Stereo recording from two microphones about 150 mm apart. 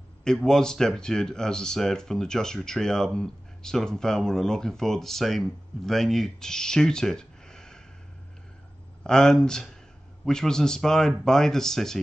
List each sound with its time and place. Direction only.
0.2 s speech: 5° left (ahead or behind)
9.0 s speech: 5° left (ahead or behind)